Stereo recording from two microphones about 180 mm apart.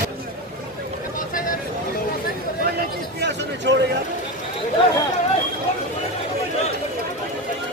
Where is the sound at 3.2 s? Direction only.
75° right (ahead or behind).